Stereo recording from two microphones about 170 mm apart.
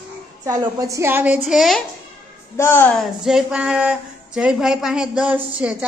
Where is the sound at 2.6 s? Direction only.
15° left (ahead or behind).